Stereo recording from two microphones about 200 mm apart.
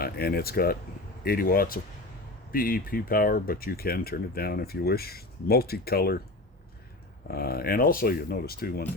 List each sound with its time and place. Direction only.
0.0 s speech: 50° left (ahead or behind)
7.3 s speech: 50° left (ahead or behind)